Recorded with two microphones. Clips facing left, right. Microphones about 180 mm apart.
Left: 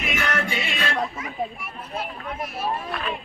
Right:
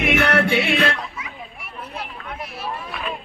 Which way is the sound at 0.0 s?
65° right (ahead or behind).